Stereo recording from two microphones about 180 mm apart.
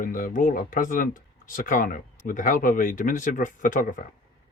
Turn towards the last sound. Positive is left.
turn(degrees=45)  # may be behind; listen again after turning